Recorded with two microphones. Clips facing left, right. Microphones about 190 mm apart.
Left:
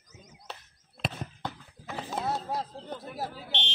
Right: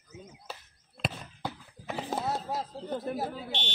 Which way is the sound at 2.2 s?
Centre (ahead or behind).